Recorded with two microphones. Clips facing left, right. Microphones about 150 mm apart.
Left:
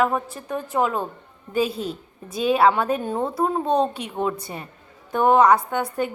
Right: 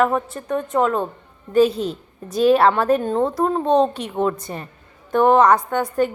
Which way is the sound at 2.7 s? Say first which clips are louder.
Right 5 dB; 10° left (ahead or behind).